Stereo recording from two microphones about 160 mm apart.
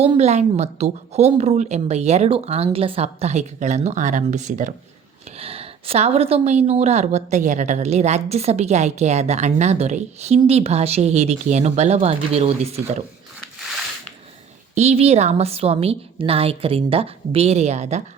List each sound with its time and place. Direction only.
0.0 s a woman's voice: 40° right (ahead or behind)
5.4 s a woman's voice: 40° right (ahead or behind)
14.8 s a woman's voice: 40° right (ahead or behind)